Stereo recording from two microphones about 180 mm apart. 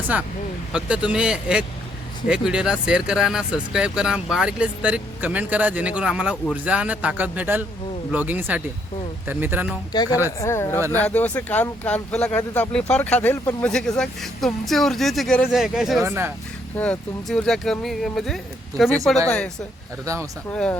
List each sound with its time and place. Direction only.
0.7 s speech: 5° right (ahead or behind)
9.9 s speech: 20° left (ahead or behind); by 16.0 s centre (ahead or behind)
16.0 s speech: 15° right (ahead or behind)
16.7 s speech: 5° left (ahead or behind)
20.5 s speech: 5° left (ahead or behind)